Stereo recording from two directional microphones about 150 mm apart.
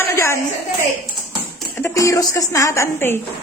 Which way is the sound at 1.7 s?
20° left (ahead or behind).